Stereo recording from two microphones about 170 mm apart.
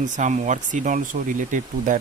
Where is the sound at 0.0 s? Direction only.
45° right (ahead or behind).